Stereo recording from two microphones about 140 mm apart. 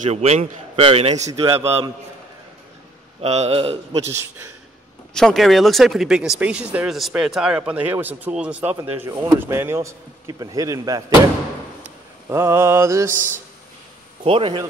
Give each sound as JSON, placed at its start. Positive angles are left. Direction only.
{"t": 0.1, "sound": "a man's voice", "side_deg": -50}
{"t": 3.2, "sound": "a man's voice", "side_deg": -50}
{"t": 5.1, "sound": "speech", "side_deg": 0}
{"t": 8.7, "sound": "speech", "side_deg": -20}
{"t": 12.3, "sound": "speech", "side_deg": -20}
{"t": 14.2, "sound": "a man's voice", "side_deg": -40}